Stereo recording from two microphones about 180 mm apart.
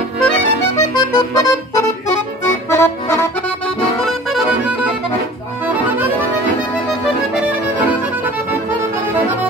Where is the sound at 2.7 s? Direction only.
15° left (ahead or behind).